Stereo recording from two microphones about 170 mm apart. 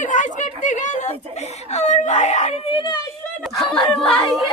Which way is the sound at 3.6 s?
Centre (ahead or behind).